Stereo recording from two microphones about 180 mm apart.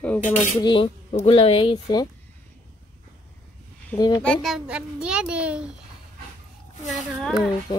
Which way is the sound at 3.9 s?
20° left (ahead or behind).